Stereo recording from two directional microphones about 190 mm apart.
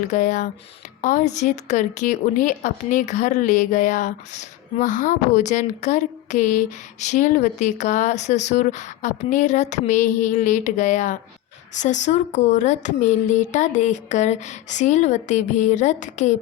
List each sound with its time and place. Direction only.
0.0 s a woman's voice: 40° left (ahead or behind)